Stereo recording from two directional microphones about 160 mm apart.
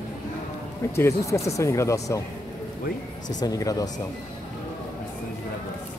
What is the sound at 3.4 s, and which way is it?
Speech, 20° left (ahead or behind).